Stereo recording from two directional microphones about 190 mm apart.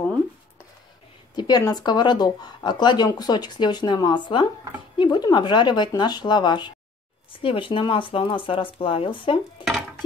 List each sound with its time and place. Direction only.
1.3 s speech: 20° left (ahead or behind)